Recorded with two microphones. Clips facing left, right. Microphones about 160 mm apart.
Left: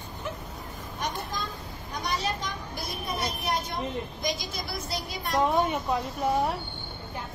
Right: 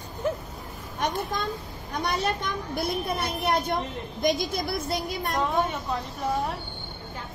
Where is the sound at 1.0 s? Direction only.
60° right (ahead or behind).